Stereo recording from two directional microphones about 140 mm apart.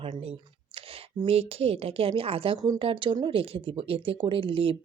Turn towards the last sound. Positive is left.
turn(degrees=-40)  # may be behind; listen again after turning